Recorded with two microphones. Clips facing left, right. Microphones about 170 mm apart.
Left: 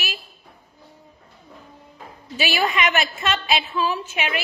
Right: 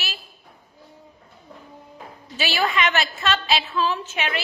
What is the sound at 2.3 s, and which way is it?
A woman's voice, 15° left (ahead or behind).